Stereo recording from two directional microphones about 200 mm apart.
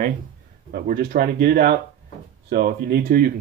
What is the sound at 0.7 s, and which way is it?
Speech, 45° right (ahead or behind).